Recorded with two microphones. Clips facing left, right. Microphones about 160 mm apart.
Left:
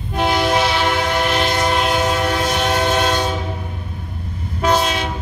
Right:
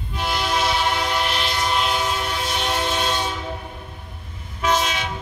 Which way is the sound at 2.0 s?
65° left (ahead or behind).